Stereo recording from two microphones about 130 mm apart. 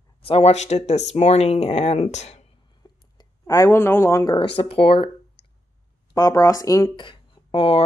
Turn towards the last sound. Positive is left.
turn(degrees=50)  # may be behind; listen again after turning